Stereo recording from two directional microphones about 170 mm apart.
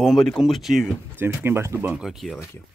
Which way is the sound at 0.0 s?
Centre (ahead or behind).